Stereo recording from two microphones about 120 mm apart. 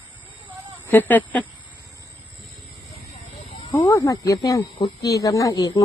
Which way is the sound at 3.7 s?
25° left (ahead or behind).